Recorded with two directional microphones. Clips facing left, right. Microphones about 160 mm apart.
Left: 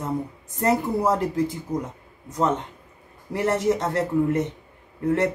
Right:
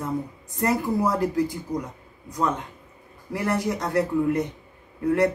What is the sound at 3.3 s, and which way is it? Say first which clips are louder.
Speech: left 4 dB; 25° left (ahead or behind).